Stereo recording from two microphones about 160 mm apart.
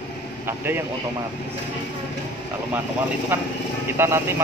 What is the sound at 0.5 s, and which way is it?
Speech, 15° right (ahead or behind).